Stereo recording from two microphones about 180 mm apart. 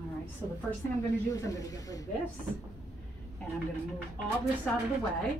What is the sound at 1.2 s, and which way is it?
Speech, 20° left (ahead or behind).